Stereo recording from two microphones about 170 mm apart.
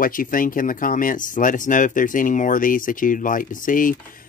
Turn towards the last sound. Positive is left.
turn(degrees=55)  # may be behind; listen again after turning